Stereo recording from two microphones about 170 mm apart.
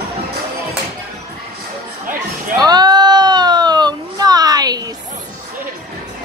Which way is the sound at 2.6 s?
25° right (ahead or behind).